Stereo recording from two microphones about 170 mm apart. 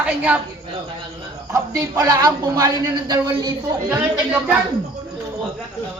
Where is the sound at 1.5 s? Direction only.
20° right (ahead or behind).